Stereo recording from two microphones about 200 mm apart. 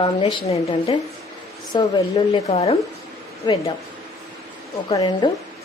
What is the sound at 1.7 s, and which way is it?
A woman's voice, 20° left (ahead or behind).